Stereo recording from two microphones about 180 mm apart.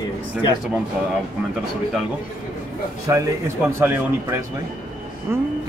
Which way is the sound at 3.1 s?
15° right (ahead or behind).